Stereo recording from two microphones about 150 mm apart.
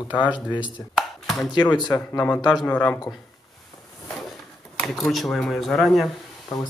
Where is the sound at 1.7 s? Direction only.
25° left (ahead or behind).